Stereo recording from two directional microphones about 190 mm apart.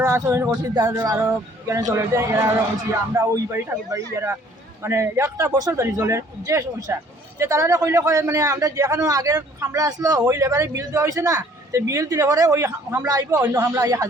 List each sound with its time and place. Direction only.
0.0 s a man's voice: 15° right (ahead or behind)